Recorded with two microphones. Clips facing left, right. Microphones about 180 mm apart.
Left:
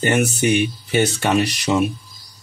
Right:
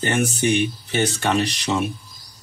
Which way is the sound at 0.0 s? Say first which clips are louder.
Left 3 dB; 10° left (ahead or behind).